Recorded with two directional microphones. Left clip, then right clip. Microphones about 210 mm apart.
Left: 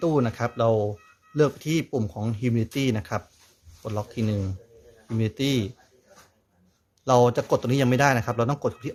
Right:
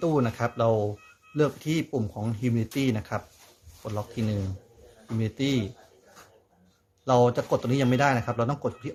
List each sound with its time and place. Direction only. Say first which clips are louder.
0.0 s a man's voice: left 2 dB; 15° left (ahead or behind)
7.0 s a man's voice: left 2 dB; 20° left (ahead or behind)